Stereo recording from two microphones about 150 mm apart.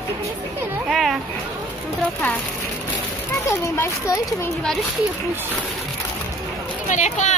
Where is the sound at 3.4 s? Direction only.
20° left (ahead or behind).